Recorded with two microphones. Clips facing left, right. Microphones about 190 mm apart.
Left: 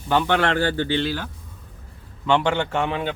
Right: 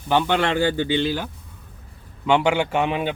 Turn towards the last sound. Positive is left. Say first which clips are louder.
# right 2 dB
turn(degrees=-15)  # may be behind; listen again after turning